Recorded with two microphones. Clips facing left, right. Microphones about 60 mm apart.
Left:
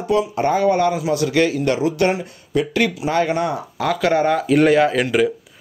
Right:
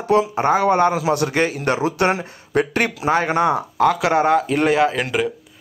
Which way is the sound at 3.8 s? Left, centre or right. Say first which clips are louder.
Right 1 dB; centre.